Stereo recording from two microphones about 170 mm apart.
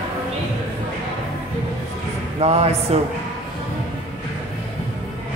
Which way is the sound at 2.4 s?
40° right (ahead or behind).